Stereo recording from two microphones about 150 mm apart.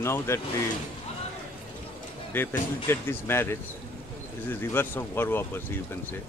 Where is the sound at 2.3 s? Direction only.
10° left (ahead or behind).